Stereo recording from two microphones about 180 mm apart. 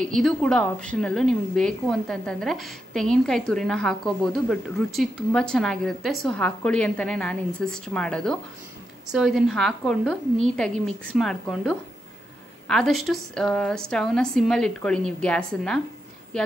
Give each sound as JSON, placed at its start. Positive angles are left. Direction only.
{"t": 0.0, "sound": "a woman's voice", "side_deg": 0}